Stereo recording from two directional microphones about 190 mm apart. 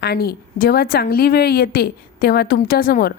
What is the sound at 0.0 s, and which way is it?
A woman's voice, 55° left (ahead or behind).